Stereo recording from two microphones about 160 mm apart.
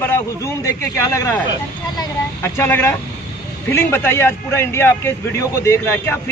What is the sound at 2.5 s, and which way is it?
A man's voice, 15° left (ahead or behind).